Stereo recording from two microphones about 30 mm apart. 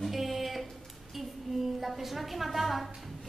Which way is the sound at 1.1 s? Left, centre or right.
Centre.